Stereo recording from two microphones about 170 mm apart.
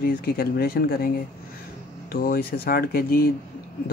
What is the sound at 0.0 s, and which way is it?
Speech, 60° left (ahead or behind).